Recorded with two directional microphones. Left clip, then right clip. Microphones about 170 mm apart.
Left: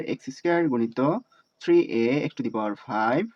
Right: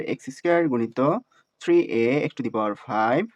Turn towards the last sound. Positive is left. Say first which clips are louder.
# right 2 dB
turn(degrees=-30)  # may be behind; listen again after turning